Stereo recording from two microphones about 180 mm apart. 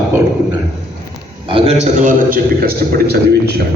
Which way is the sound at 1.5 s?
35° right (ahead or behind).